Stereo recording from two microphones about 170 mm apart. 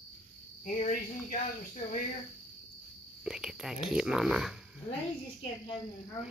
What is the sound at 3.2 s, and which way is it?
Speech, 5° right (ahead or behind).